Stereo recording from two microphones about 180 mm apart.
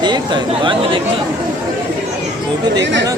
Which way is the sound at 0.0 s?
25° right (ahead or behind).